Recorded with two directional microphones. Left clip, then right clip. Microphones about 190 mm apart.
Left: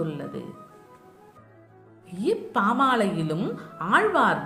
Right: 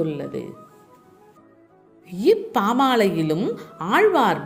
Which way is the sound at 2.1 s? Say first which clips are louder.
Right 8 dB; 35° right (ahead or behind).